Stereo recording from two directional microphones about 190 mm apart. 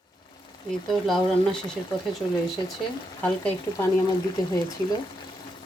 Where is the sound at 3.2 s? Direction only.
10° left (ahead or behind).